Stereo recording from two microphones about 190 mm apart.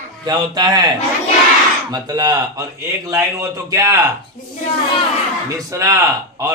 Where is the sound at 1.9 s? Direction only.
20° right (ahead or behind).